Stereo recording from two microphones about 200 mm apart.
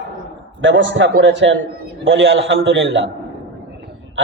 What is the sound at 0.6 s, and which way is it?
A man's voice, 65° right (ahead or behind).